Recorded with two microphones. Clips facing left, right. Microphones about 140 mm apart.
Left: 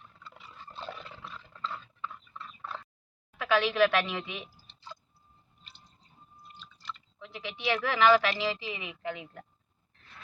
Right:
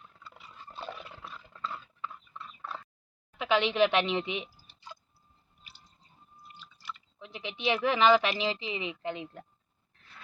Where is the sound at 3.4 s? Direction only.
20° right (ahead or behind).